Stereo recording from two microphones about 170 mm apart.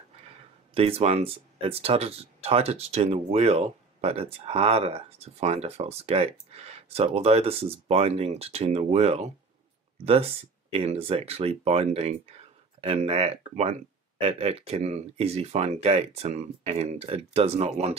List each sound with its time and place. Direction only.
0.7 s speech: 35° right (ahead or behind)